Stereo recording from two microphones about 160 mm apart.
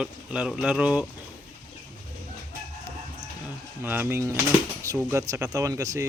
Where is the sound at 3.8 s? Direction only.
15° right (ahead or behind).